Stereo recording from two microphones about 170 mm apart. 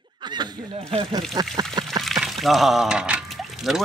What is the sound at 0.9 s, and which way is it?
Speech, 25° right (ahead or behind).